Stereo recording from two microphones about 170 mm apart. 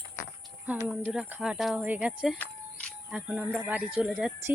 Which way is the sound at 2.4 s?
10° left (ahead or behind).